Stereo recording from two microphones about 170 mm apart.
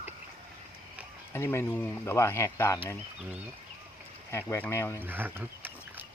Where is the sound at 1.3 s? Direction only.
15° left (ahead or behind).